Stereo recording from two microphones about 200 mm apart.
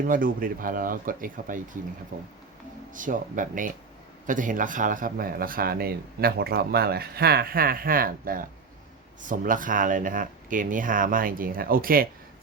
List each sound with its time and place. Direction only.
0.0 s a man's voice: 45° right (ahead or behind)